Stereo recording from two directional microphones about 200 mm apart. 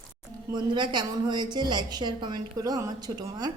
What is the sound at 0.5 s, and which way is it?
A woman's voice, 20° right (ahead or behind).